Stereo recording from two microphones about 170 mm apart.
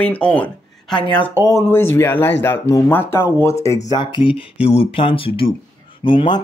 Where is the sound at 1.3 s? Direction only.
20° right (ahead or behind).